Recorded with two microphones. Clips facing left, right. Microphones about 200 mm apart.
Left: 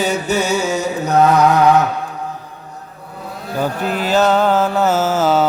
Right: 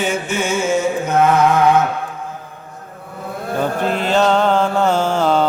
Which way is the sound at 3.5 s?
5° left (ahead or behind).